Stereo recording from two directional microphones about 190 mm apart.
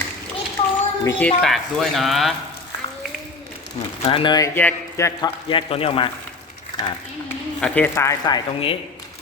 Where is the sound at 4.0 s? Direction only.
30° left (ahead or behind).